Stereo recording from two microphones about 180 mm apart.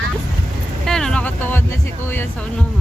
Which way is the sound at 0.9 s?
5° left (ahead or behind).